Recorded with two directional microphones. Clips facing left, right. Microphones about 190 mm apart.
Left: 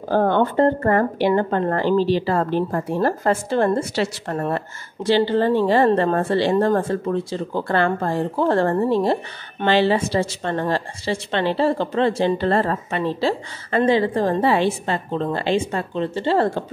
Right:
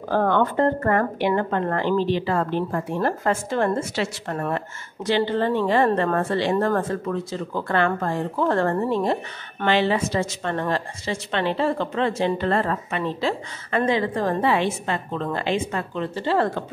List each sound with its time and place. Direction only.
0.1 s speech: 30° left (ahead or behind)